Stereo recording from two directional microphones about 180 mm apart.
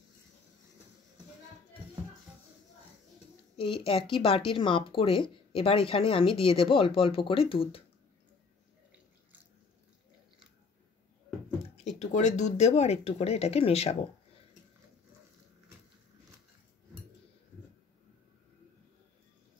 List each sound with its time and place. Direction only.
3.5 s speech: 30° left (ahead or behind)
11.8 s speech: 40° left (ahead or behind)